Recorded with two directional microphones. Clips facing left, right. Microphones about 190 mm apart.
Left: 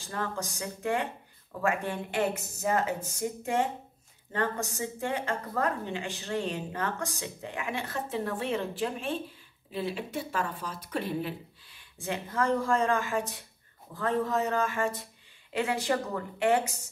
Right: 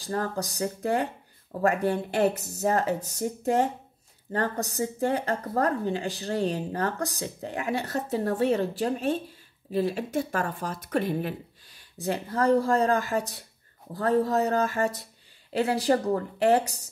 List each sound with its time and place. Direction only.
0.0 s speech: 40° right (ahead or behind)